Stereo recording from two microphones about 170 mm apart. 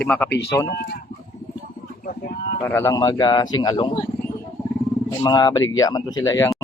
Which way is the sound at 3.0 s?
25° left (ahead or behind).